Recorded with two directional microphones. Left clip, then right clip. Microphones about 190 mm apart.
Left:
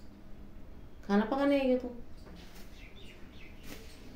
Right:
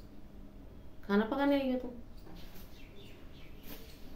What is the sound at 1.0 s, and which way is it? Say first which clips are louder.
Speech: left 1 dB; 15° left (ahead or behind).